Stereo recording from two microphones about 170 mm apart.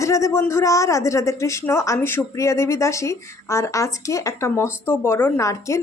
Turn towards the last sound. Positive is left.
turn(degrees=20)  # may be behind; listen again after turning